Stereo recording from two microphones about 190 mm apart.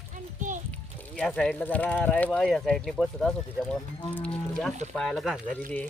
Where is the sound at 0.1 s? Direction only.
40° right (ahead or behind).